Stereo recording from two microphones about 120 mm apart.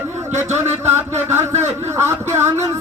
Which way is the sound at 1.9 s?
25° right (ahead or behind).